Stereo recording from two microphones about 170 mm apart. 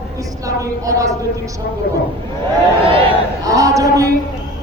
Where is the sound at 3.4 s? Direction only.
20° right (ahead or behind).